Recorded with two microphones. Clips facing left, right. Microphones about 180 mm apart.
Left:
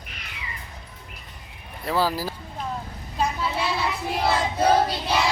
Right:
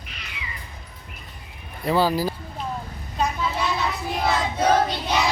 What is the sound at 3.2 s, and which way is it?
Child singing, 5° left (ahead or behind).